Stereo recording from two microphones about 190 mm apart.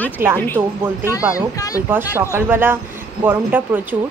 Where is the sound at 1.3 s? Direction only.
20° left (ahead or behind).